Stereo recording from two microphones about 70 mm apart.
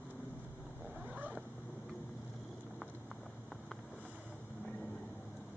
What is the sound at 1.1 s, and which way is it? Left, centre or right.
Cat, right.